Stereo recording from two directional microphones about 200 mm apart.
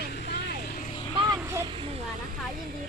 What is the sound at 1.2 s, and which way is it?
Speech, 20° right (ahead or behind).